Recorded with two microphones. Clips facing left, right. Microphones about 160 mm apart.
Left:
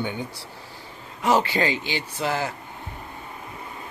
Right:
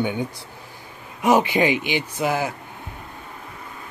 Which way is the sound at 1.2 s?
15° right (ahead or behind).